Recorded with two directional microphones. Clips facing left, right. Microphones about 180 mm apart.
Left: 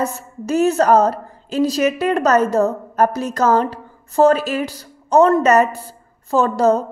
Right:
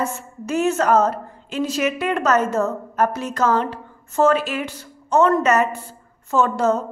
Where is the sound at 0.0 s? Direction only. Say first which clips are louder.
Left 3 dB; 40° left (ahead or behind).